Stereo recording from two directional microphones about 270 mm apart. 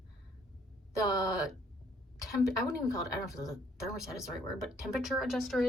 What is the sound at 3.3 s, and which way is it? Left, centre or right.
Speech, centre.